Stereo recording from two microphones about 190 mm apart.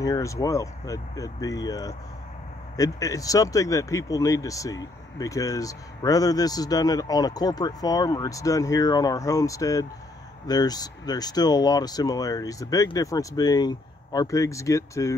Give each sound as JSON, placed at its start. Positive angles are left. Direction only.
{"t": 0.0, "sound": "speech", "side_deg": 15}